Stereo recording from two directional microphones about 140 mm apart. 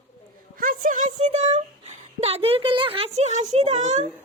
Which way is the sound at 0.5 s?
80° right.